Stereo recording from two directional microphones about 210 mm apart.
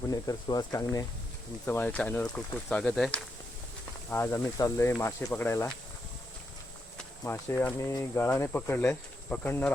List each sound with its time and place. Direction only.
0.1 s speech: 20° left (ahead or behind)
6.9 s speech: 10° left (ahead or behind)